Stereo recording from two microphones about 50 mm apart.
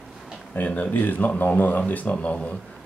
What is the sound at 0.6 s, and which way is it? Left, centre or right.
Speech, left.